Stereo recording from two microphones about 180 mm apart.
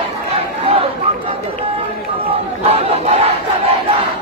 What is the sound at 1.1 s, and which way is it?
Run, 35° right (ahead or behind).